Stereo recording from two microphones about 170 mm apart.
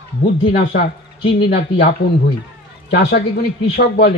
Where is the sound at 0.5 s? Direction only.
90° left.